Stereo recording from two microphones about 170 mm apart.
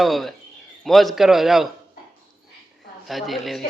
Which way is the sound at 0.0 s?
Centre (ahead or behind).